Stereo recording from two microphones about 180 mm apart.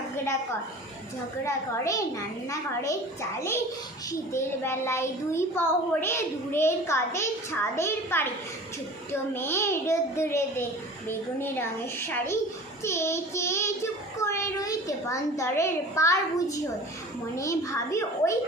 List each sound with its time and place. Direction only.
1.5 s a child's voice: 15° left (ahead or behind)
4.1 s a child's voice: 15° left (ahead or behind)
9.3 s a child's voice: 10° left (ahead or behind)